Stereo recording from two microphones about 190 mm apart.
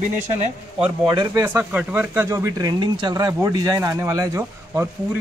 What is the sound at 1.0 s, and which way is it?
Speech, 20° right (ahead or behind).